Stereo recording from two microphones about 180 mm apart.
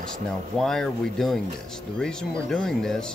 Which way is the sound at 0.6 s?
5° left (ahead or behind).